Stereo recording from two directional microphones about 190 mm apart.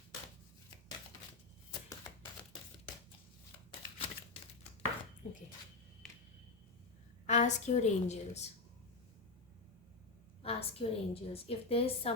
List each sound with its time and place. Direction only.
5.2 s a woman's voice: 40° left (ahead or behind)
7.3 s a woman's voice: 40° left (ahead or behind)
10.4 s a woman's voice: 30° left (ahead or behind)